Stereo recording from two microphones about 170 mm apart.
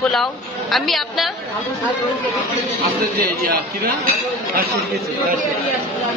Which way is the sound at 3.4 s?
60° right (ahead or behind).